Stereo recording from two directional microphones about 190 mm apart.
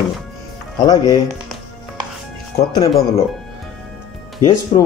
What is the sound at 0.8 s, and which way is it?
Speech, 20° left (ahead or behind).